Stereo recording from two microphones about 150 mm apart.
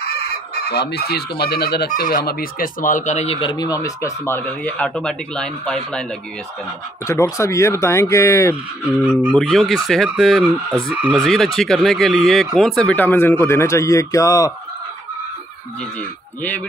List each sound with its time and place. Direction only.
0.6 s speech: 90° left; by 3.3 s 50° left (ahead or behind)
3.3 s speech: 30° left (ahead or behind); by 6.0 s 5° left (ahead or behind)
7.1 s speech: 20° left (ahead or behind)
9.3 s speech: centre (ahead or behind)
10.9 s speech: 10° right (ahead or behind)
11.1 s speech: centre (ahead or behind); by 14.5 s 20° left (ahead or behind)
16.0 s speech: 10° left (ahead or behind)